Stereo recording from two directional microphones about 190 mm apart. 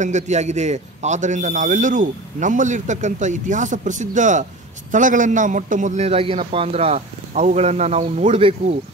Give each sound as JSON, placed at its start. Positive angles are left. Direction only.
{"t": 0.0, "sound": "a man's voice", "side_deg": -40}